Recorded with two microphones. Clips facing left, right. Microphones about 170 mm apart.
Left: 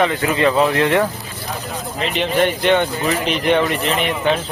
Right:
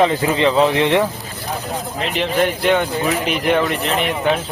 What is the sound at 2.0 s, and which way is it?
Speech, centre (ahead or behind).